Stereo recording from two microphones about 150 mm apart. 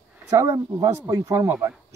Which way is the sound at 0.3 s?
20° right (ahead or behind).